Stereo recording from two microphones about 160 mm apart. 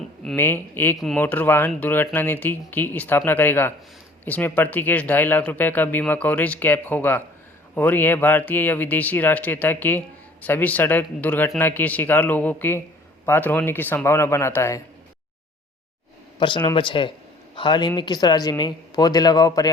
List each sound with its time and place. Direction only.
0.3 s speech: 15° left (ahead or behind)
16.4 s a man's voice: 25° left (ahead or behind)